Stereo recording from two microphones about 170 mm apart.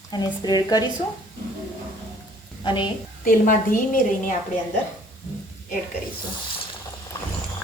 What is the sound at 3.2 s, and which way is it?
A woman's voice, 55° left (ahead or behind).